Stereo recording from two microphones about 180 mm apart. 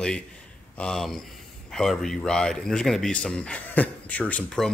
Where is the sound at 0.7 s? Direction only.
5° left (ahead or behind).